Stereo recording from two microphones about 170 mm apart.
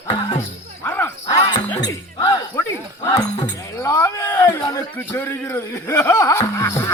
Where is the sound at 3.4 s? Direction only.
15° left (ahead or behind).